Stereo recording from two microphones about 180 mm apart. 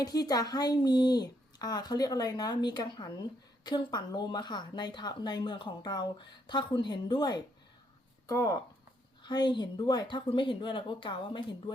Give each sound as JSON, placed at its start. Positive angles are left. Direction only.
{"t": 0.0, "sound": "speech", "side_deg": 20}